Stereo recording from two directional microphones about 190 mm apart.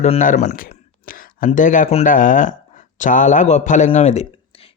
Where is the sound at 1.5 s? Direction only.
40° left (ahead or behind).